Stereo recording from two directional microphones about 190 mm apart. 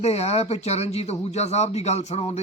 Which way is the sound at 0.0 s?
35° left (ahead or behind).